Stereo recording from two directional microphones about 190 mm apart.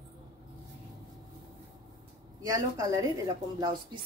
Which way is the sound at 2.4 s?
20° right (ahead or behind).